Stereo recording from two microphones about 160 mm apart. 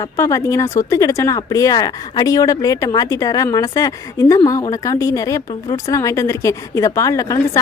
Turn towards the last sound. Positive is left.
turn(degrees=20)  # may be behind; listen again after turning